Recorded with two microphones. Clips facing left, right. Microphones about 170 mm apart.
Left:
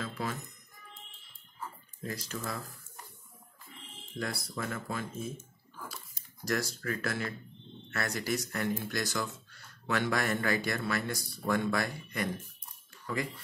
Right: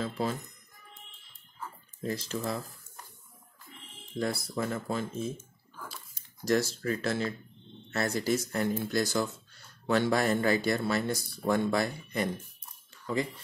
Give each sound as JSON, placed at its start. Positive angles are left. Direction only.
{"t": 0.0, "sound": "speech", "side_deg": -30}
{"t": 2.0, "sound": "speech", "side_deg": -30}
{"t": 4.2, "sound": "speech", "side_deg": -25}
{"t": 6.4, "sound": "speech", "side_deg": -25}